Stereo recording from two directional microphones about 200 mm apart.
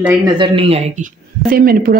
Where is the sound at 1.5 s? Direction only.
50° right (ahead or behind).